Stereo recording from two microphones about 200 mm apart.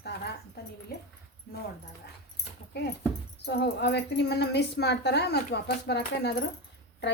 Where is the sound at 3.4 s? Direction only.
55° left (ahead or behind).